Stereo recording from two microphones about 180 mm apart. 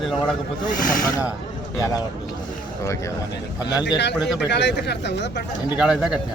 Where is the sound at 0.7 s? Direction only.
50° left (ahead or behind).